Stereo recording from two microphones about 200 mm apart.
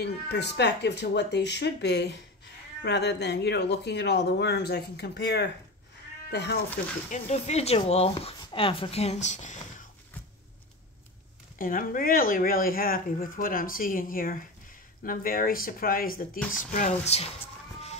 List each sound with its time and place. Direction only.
0.0 s speech: 55° left (ahead or behind)
7.1 s speech: 35° left (ahead or behind)
11.5 s speech: 45° left (ahead or behind)